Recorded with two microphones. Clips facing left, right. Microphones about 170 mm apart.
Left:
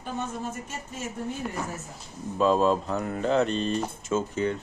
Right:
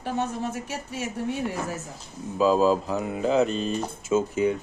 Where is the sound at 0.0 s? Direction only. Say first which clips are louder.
Right 4 dB; 70° right (ahead or behind).